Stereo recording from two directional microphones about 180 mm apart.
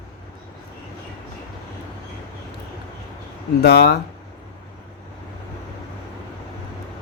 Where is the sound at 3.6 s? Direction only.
60° left (ahead or behind).